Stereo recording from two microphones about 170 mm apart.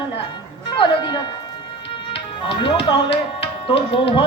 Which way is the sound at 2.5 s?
30° left (ahead or behind).